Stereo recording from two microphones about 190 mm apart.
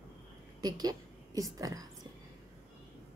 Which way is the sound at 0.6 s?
20° right (ahead or behind).